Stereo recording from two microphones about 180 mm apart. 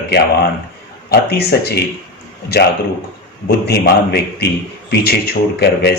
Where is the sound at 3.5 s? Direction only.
60° left (ahead or behind).